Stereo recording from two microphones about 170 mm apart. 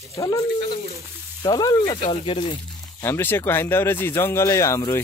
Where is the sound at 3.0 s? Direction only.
15° left (ahead or behind).